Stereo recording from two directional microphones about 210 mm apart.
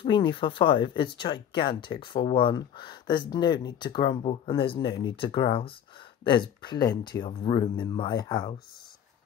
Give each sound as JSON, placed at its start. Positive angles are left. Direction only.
{"t": 0.0, "sound": "speech", "side_deg": 25}